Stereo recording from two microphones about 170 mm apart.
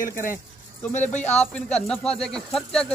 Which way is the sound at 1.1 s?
10° left (ahead or behind).